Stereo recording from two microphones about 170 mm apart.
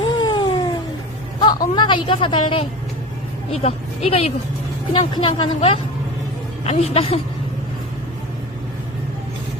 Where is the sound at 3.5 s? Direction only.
40° left (ahead or behind).